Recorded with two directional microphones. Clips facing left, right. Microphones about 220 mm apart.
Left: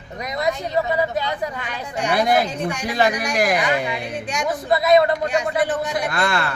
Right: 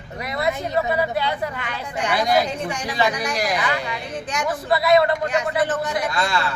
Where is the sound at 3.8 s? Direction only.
15° left (ahead or behind).